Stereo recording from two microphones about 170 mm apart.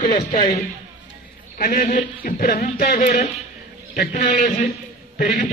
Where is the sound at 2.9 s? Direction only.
45° left (ahead or behind).